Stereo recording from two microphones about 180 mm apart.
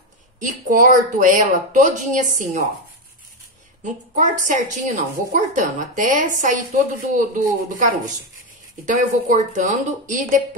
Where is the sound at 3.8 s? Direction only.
45° right (ahead or behind).